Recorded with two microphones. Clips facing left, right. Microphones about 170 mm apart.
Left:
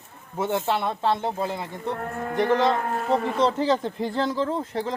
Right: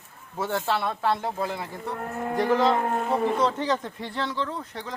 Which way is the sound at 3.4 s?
30° left (ahead or behind).